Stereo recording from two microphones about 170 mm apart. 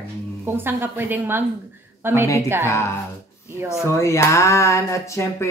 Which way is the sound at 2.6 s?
15° left (ahead or behind).